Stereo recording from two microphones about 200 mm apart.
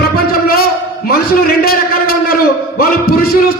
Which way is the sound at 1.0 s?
50° left (ahead or behind).